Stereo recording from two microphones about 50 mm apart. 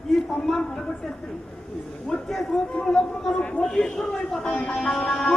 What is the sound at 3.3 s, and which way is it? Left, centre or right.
Speech, left.